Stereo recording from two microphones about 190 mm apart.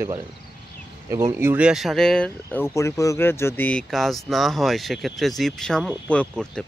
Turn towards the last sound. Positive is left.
turn(degrees=5)  # may be behind; listen again after turning